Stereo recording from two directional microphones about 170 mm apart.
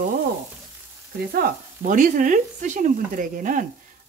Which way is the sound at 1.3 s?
50° right (ahead or behind).